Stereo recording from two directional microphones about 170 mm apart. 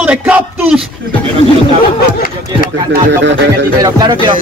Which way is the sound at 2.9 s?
90° right.